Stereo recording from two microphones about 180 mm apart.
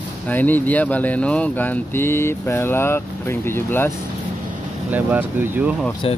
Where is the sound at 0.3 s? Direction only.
10° left (ahead or behind).